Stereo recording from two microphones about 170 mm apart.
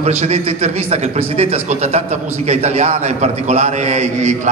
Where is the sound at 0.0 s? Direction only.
40° right (ahead or behind).